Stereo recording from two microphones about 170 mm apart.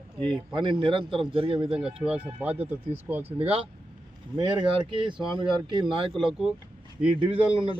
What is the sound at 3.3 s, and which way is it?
A man's voice, 35° right (ahead or behind).